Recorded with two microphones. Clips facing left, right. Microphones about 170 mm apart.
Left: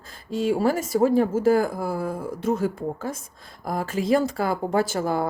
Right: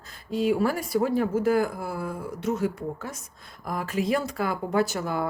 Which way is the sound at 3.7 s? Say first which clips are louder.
Left 4 dB; 30° left (ahead or behind).